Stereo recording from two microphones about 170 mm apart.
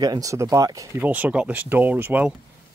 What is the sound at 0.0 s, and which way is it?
Speech, 20° right (ahead or behind).